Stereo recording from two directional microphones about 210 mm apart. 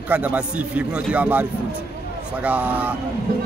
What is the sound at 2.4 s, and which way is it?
Speech, 5° right (ahead or behind).